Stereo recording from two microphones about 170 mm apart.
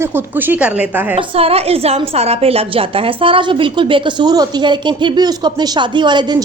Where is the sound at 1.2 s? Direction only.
35° right (ahead or behind).